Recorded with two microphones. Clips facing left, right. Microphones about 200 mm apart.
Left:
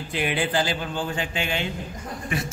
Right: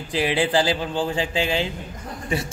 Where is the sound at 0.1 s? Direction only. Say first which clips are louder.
Right 4 dB; 30° right (ahead or behind).